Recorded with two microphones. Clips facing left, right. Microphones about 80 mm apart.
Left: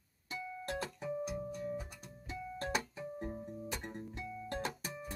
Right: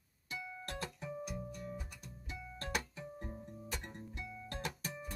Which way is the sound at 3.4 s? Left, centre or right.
Centre.